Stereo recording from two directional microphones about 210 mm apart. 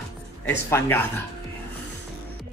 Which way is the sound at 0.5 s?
10° left (ahead or behind).